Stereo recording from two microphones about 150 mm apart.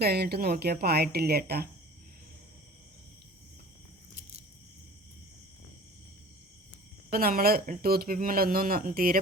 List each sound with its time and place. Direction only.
0.0 s speech: 90° right
7.1 s speech: 80° right